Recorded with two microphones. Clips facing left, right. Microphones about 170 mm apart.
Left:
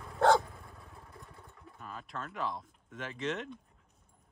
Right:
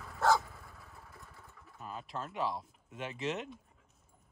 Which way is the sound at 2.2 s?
5° right (ahead or behind).